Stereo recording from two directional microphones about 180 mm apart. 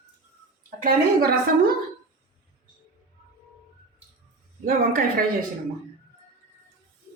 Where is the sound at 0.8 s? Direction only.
55° right (ahead or behind).